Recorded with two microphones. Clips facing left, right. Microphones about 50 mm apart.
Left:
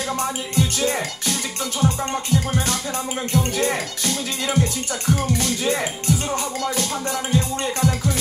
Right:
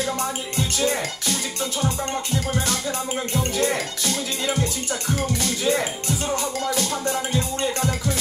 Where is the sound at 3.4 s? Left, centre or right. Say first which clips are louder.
Even; left.